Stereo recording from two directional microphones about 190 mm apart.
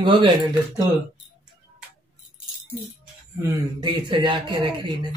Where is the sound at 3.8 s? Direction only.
25° right (ahead or behind).